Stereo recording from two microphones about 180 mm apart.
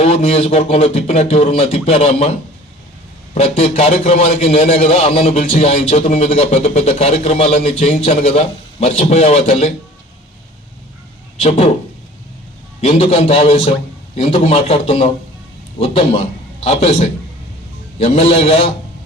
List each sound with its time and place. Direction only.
0.0 s a man's voice: 35° left (ahead or behind)
3.3 s a man's voice: 40° left (ahead or behind)
11.3 s a man's voice: 35° left (ahead or behind)
12.8 s a man's voice: 35° left (ahead or behind)